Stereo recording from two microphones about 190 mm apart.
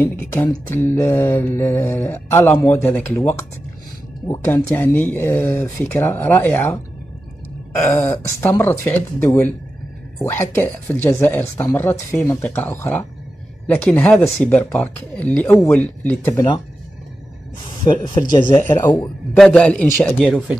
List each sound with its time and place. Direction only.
0.0 s speech: 15° left (ahead or behind)
7.8 s speech: 15° left (ahead or behind)
18.5 s a man's voice: 15° left (ahead or behind); by 20.5 s centre (ahead or behind)